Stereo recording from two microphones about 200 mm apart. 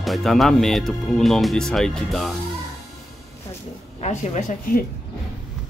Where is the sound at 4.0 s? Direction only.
35° left (ahead or behind).